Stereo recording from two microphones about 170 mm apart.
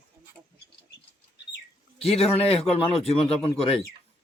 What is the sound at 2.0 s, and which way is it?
Speech, 35° left (ahead or behind).